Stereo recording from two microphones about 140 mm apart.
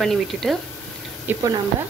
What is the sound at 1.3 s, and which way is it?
Speech, 15° right (ahead or behind).